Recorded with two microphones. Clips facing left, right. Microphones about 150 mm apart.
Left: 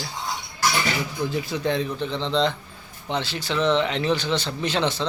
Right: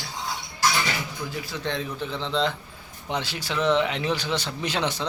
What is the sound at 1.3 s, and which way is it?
Speech, 20° left (ahead or behind).